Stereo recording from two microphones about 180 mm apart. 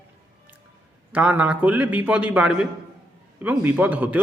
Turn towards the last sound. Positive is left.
turn(degrees=-10)  # may be behind; listen again after turning